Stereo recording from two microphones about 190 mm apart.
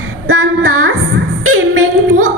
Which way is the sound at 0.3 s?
90° right.